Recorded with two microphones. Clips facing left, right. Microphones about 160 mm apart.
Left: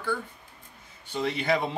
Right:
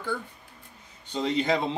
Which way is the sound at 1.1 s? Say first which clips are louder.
Right 1 dB; 20° right (ahead or behind).